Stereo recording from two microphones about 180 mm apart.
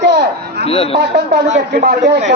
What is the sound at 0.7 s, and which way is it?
Speech, 30° left (ahead or behind).